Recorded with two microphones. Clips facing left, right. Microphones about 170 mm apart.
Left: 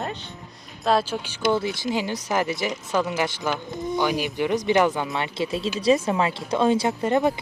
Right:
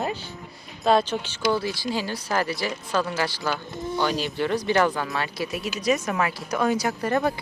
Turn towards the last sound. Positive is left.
turn(degrees=20)  # may be behind; listen again after turning